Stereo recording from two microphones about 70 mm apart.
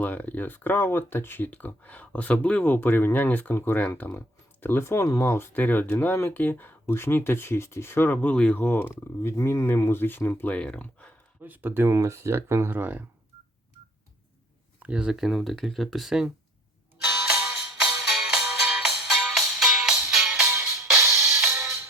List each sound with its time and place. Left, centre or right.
0.0 s speech: left
5.5 s speech: left
8.4 s speech: centre
8.6 s speech: left
8.9 s speech: left
10.5 s speech: centre
11.4 s speech: right
11.9 s speech: right
14.8 s speech: centre
17.4 s music: centre
20.5 s music: right
21.2 s music: centre